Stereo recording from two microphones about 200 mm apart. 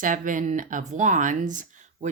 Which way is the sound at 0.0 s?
40° right (ahead or behind).